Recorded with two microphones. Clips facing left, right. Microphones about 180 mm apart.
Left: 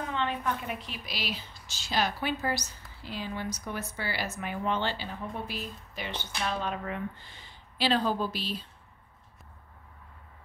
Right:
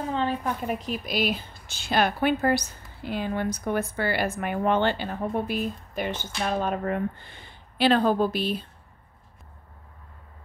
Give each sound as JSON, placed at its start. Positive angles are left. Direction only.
{"t": 0.0, "sound": "a woman's voice", "side_deg": -35}